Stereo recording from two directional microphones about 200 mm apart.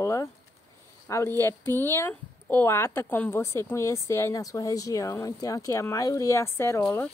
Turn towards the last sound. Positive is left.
turn(degrees=10)  # may be behind; listen again after turning